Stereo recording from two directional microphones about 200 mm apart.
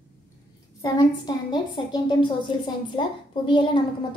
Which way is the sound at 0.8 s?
20° left (ahead or behind).